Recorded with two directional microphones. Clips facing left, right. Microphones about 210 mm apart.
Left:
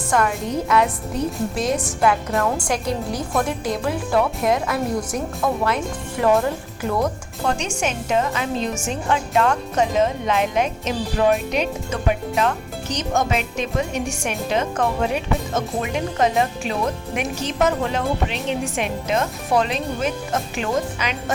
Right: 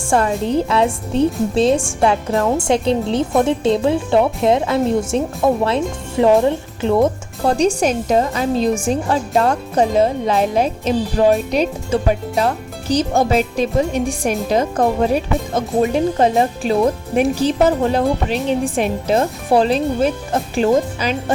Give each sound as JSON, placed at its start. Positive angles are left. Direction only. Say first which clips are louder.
{"t": 0.1, "sound": "a woman's voice", "louder": "right 5 dB", "side_deg": -30}